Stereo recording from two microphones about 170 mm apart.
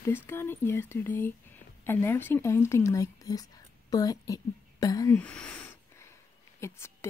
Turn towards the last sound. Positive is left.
turn(degrees=15)  # may be behind; listen again after turning